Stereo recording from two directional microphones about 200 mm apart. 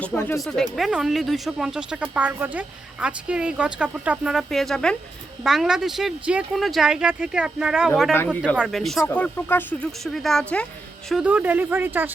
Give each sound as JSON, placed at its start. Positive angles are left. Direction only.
{"t": 0.0, "sound": "speech", "side_deg": 10}
{"t": 8.1, "sound": "speech", "side_deg": 10}
{"t": 8.5, "sound": "speech", "side_deg": 0}
{"t": 11.1, "sound": "speech", "side_deg": -5}